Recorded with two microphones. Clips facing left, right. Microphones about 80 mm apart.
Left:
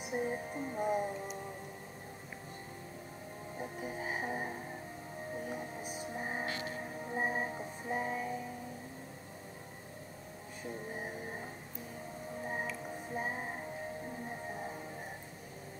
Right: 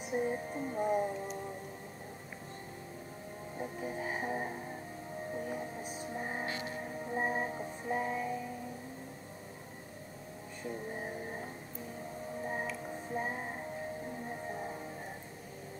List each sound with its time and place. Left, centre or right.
0.0 s music: centre
3.5 s music: centre
6.4 s music: right
6.8 s music: centre
12.4 s music: centre